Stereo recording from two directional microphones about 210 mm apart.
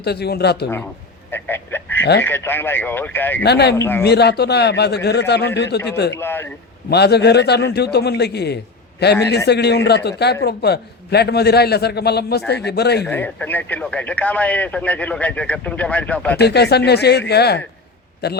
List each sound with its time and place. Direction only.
0.0 s a man's voice: 50° left (ahead or behind)
1.3 s a sound: 10° left (ahead or behind)
2.2 s speech: 10° left (ahead or behind)
3.4 s a man's voice: 50° left (ahead or behind)
3.8 s speech: 10° left (ahead or behind)
4.0 s a man's voice: 50° left (ahead or behind)
6.1 s speech: 10° left (ahead or behind)
6.9 s a man's voice: 50° left (ahead or behind)
13.1 s speech: 10° left (ahead or behind)
16.4 s a man's voice: 50° left (ahead or behind)